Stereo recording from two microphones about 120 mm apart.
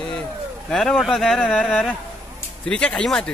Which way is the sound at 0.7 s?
5° left (ahead or behind).